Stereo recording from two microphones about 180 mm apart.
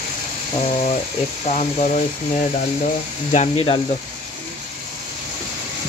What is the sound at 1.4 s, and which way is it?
Speech, 40° left (ahead or behind).